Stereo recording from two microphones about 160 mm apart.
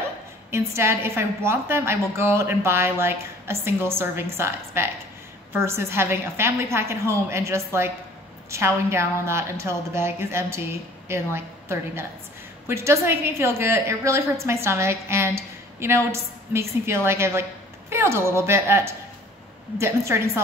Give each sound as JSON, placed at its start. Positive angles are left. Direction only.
{"t": 0.5, "sound": "a woman's voice", "side_deg": -15}